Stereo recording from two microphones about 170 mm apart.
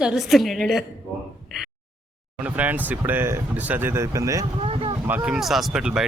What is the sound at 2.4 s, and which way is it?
Speech, 10° right (ahead or behind).